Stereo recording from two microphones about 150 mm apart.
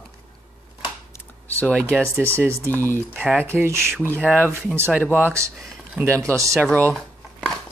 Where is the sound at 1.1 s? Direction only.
10° left (ahead or behind).